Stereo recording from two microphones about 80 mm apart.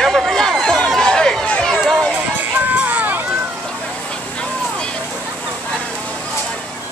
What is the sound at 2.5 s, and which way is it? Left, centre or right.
Music, right.